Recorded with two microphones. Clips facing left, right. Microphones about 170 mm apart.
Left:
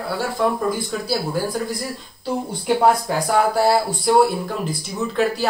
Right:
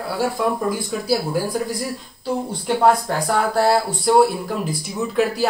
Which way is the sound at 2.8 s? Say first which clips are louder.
Right 2 dB; centre (ahead or behind).